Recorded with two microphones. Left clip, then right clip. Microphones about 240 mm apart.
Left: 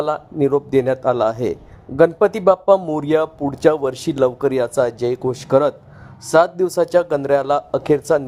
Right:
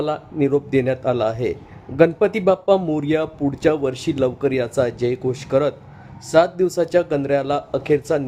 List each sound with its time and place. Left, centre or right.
0.0 s speech: left